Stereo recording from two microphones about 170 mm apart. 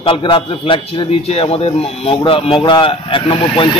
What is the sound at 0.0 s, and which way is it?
A man's voice, 30° left (ahead or behind).